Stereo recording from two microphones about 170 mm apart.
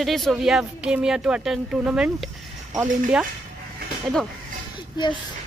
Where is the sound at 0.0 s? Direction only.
Centre (ahead or behind).